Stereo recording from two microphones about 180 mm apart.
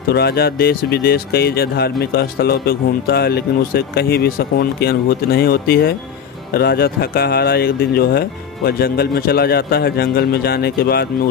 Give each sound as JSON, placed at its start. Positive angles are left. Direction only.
{"t": 0.1, "sound": "speech", "side_deg": 60}